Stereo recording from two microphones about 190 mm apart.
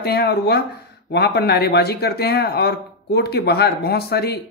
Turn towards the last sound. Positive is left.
turn(degrees=55)  # may be behind; listen again after turning